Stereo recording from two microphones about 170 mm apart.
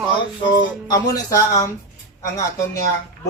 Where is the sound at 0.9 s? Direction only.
20° left (ahead or behind).